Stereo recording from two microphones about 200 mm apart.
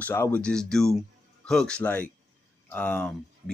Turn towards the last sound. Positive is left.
turn(degrees=5)  # may be behind; listen again after turning